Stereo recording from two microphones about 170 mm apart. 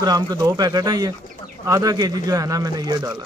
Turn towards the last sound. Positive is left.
turn(degrees=-25)  # may be behind; listen again after turning